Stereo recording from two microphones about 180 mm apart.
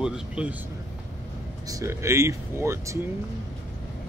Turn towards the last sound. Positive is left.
turn(degrees=-15)  # may be behind; listen again after turning